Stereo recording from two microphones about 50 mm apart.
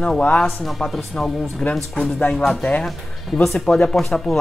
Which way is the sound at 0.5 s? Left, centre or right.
Centre.